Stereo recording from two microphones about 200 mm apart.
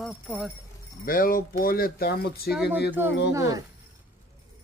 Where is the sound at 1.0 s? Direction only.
45° left (ahead or behind).